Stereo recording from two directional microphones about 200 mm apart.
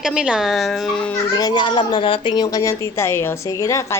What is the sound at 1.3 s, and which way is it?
A woman's voice, 20° left (ahead or behind).